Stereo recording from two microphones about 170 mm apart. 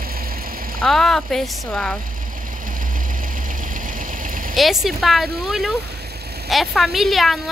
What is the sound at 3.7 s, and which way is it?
Vehicle, 55° right (ahead or behind).